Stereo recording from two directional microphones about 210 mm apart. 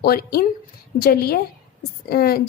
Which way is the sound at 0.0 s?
45° left (ahead or behind).